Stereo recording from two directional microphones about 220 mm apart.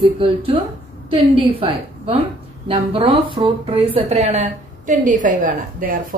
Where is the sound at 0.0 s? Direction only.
25° right (ahead or behind).